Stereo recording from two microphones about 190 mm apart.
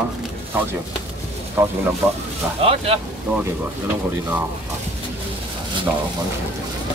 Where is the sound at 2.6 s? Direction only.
30° right (ahead or behind).